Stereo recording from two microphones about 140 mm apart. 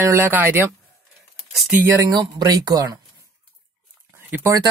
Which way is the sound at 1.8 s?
20° right (ahead or behind).